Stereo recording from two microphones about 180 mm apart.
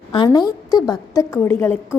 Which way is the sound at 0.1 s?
25° left (ahead or behind).